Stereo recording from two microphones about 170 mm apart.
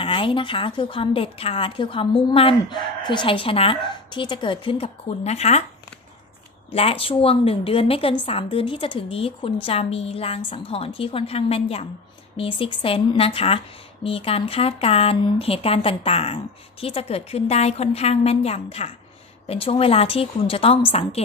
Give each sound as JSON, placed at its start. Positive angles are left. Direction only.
{"t": 0.0, "sound": "a woman's voice", "side_deg": 30}
{"t": 6.7, "sound": "a woman's voice", "side_deg": 35}